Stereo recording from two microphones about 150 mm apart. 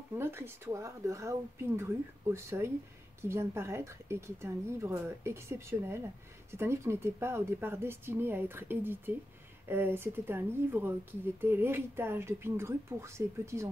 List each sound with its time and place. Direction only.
0.1 s speech: 15° right (ahead or behind)